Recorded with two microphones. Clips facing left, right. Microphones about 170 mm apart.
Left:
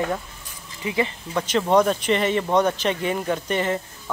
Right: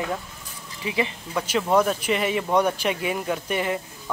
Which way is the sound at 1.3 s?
5° right (ahead or behind).